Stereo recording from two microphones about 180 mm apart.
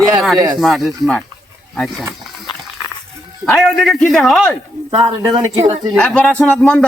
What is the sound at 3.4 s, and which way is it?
Speech, centre (ahead or behind).